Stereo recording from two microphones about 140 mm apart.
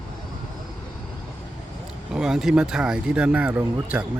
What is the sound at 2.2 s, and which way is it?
Speech, 5° right (ahead or behind).